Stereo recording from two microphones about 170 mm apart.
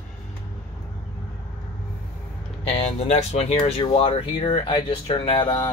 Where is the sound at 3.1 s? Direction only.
40° left (ahead or behind).